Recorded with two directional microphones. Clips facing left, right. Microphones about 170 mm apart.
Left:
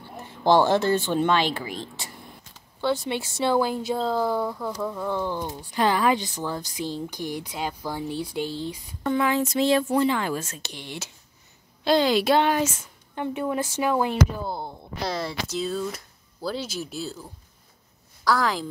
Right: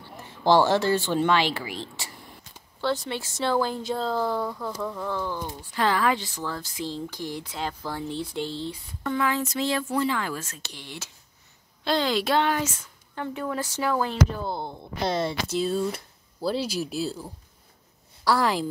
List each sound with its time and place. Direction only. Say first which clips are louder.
0.4 s speech: left 1 dB; 15° left (ahead or behind)
3.1 s speech: left 3 dB; 15° left (ahead or behind)
15.0 s speech: right 3 dB; 25° right (ahead or behind)
15.5 s speech: right 2 dB; centre (ahead or behind)
16.5 s speech: right 3 dB; 35° right (ahead or behind)
16.8 s speech: right 4 dB; 5° right (ahead or behind)
18.2 s a woman's voice: even; 30° right (ahead or behind)